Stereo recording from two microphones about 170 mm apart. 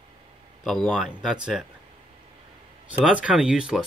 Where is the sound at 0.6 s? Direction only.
Centre (ahead or behind).